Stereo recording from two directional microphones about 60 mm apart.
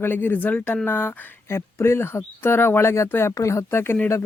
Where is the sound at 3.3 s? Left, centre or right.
Left.